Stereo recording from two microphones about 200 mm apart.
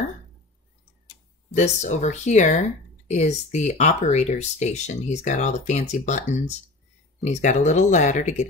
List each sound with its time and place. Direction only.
1.5 s speech: 35° left (ahead or behind)